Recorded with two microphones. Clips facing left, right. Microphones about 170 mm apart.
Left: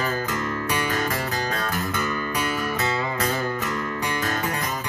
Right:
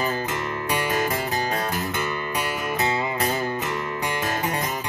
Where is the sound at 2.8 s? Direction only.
20° right (ahead or behind).